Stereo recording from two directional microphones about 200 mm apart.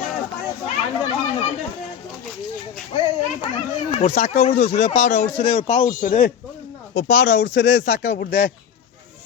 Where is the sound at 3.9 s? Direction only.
35° left (ahead or behind); by 8.5 s 50° left (ahead or behind).